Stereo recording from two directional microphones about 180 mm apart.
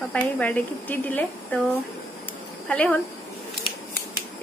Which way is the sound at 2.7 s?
10° left (ahead or behind).